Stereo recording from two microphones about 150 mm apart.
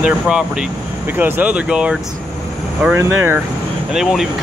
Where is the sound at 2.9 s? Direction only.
15° right (ahead or behind).